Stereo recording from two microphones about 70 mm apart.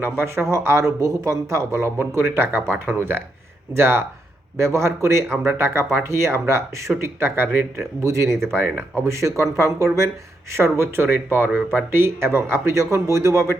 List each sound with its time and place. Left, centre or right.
0.0 s speech: right
8.0 s speech: right
8.5 s speech: right
9.0 s speech: right
10.6 s speech: right